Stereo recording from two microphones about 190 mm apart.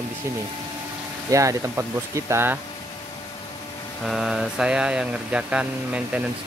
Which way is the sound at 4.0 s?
Centre (ahead or behind).